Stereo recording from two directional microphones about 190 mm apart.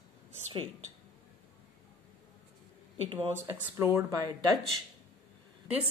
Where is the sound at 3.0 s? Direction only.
30° right (ahead or behind).